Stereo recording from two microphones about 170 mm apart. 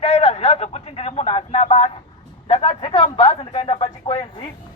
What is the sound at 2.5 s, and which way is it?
Speech, 35° left (ahead or behind).